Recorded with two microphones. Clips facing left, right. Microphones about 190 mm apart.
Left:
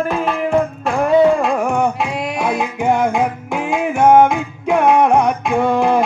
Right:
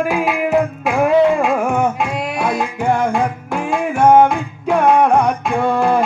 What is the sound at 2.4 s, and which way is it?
Music, 10° left (ahead or behind).